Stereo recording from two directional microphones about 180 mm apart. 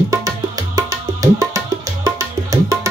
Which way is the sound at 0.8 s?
15° right (ahead or behind).